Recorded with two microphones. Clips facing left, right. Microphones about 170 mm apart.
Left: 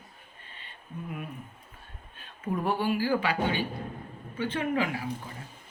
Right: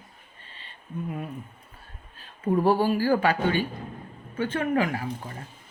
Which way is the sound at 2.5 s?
35° right (ahead or behind).